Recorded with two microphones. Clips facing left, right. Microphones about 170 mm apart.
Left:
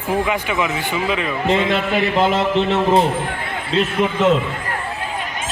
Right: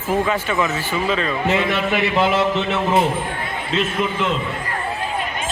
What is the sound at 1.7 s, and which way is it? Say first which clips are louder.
Speech: left 1 dB; 45° left (ahead or behind).